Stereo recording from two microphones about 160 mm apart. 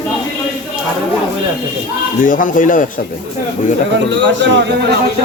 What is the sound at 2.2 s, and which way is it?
Speech, 55° left (ahead or behind).